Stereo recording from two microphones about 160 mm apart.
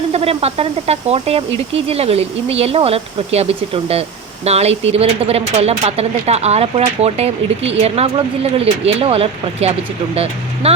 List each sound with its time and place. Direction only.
0.1 s speech: 40° right (ahead or behind)